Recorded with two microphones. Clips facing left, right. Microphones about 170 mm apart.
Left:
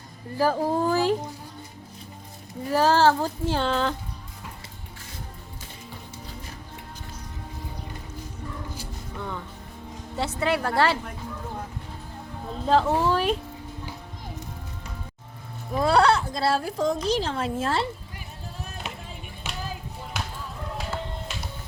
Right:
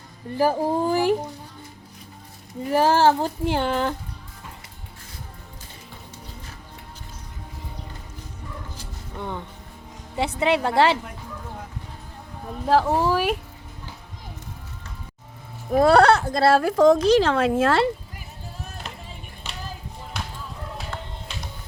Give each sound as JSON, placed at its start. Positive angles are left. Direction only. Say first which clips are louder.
{"t": 0.3, "sound": "speech", "louder": "right 2 dB", "side_deg": -15}
{"t": 2.7, "sound": "speech", "louder": "right 2 dB", "side_deg": -15}
{"t": 9.1, "sound": "a woman's voice", "louder": "right 3 dB", "side_deg": -20}
{"t": 12.5, "sound": "speech", "louder": "right 2 dB", "side_deg": -10}
{"t": 15.7, "sound": "speech", "louder": "right 5 dB", "side_deg": -60}
{"t": 20.7, "sound": "music", "louder": "left 3 dB", "side_deg": 5}